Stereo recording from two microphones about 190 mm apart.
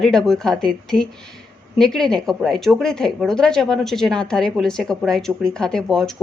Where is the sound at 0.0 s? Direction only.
Centre (ahead or behind).